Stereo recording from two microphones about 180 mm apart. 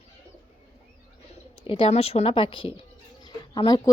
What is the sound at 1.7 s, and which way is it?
Speech, 35° left (ahead or behind).